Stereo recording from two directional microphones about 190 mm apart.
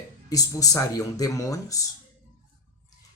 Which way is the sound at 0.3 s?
20° left (ahead or behind).